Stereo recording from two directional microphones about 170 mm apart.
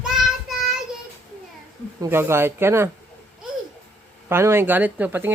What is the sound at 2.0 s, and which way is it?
Speech, 15° right (ahead or behind).